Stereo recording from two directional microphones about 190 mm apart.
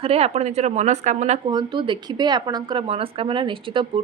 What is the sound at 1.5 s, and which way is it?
A woman's voice, 25° right (ahead or behind).